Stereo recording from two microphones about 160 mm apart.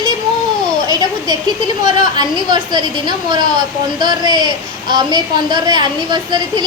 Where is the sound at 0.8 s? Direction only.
25° right (ahead or behind).